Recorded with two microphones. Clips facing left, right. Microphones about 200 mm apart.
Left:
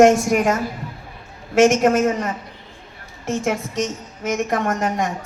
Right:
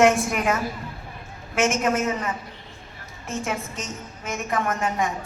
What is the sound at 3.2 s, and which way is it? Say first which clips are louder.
A woman's voice: left 7 dB; 80° left.